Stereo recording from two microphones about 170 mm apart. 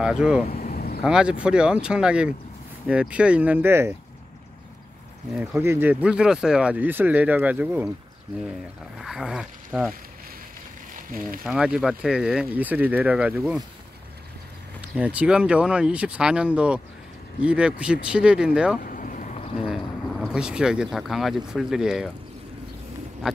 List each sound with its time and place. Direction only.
0.0 s speech: 5° right (ahead or behind)
0.5 s vehicle: 60° left (ahead or behind)
1.0 s speech: 5° right (ahead or behind)
5.3 s speech: 10° right (ahead or behind)
8.9 s speech: 5° right (ahead or behind)
11.1 s speech: 55° right (ahead or behind)
11.4 s speech: 5° right (ahead or behind)
14.8 s speech: 10° right (ahead or behind)
18.8 s boat: 50° left (ahead or behind)
19.7 s speech: 5° right (ahead or behind)
23.2 s speech: 5° right (ahead or behind)